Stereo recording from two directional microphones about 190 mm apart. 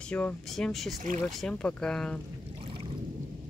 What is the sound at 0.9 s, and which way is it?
Speech, 45° right (ahead or behind).